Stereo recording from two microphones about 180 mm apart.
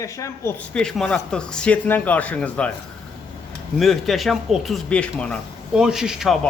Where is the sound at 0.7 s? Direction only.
5° left (ahead or behind).